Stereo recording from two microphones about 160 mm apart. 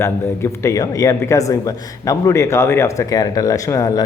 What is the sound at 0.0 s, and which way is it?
A man's voice, 15° left (ahead or behind).